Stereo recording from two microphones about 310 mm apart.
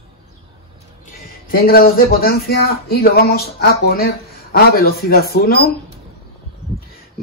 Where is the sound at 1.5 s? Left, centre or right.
Left.